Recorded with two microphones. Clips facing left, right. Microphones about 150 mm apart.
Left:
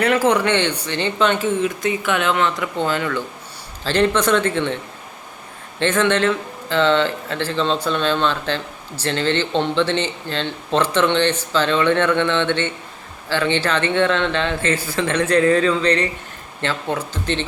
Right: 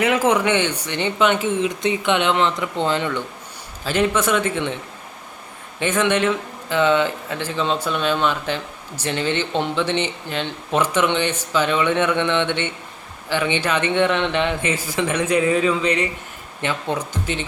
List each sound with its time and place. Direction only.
0.3 s speech: 10° right (ahead or behind)
3.8 s speech: 10° right (ahead or behind)
5.8 s speech: 10° right (ahead or behind)